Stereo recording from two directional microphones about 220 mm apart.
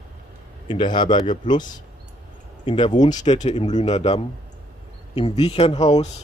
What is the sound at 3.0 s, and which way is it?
Speech, 35° left (ahead or behind).